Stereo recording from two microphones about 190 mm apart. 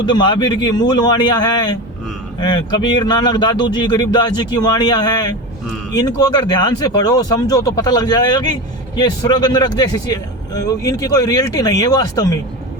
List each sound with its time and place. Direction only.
0.0 s speech: 25° left (ahead or behind)